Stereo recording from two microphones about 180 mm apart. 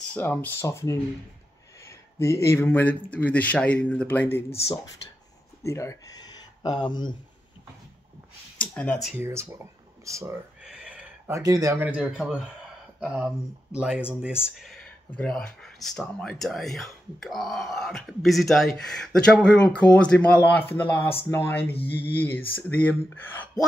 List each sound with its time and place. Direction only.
0.1 s speech: 10° left (ahead or behind)
5.6 s speech: 15° left (ahead or behind)
8.5 s speech: 5° left (ahead or behind)
9.1 s speech: 15° right (ahead or behind); by 23.6 s 10° left (ahead or behind)